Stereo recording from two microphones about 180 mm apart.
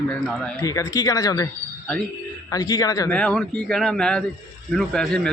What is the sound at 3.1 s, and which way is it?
Speech, 5° left (ahead or behind).